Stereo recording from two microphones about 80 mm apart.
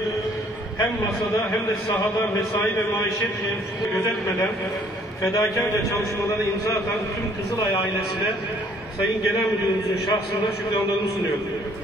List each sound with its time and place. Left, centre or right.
5.2 s a man's voice: left